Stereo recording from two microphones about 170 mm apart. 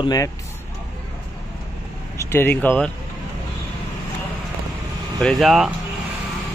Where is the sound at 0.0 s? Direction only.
20° left (ahead or behind).